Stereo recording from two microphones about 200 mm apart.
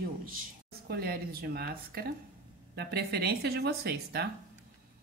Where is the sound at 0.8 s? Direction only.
50° right (ahead or behind).